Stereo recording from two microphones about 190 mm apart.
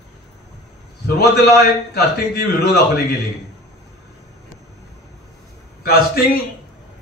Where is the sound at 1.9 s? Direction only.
60° left (ahead or behind).